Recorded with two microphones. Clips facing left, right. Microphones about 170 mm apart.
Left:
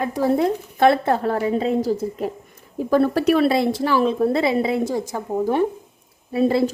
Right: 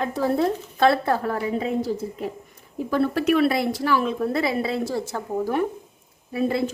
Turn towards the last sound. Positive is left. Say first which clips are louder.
# left 5 dB
turn(degrees=30)  # may be behind; listen again after turning